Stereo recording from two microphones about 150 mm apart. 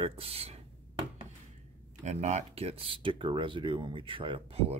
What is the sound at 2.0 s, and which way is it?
Speech, 50° right (ahead or behind).